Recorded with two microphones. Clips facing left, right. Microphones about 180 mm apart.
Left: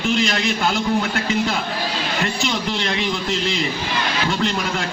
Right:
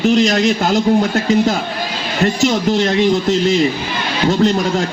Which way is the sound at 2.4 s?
40° right (ahead or behind).